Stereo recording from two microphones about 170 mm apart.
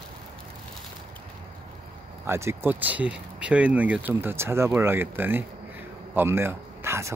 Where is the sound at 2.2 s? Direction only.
15° right (ahead or behind).